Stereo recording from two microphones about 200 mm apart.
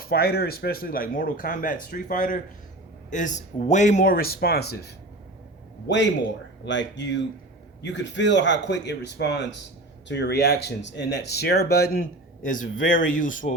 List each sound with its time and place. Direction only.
0.0 s speech: 50° left (ahead or behind)
5.9 s speech: 65° left (ahead or behind); by 13.5 s 40° left (ahead or behind)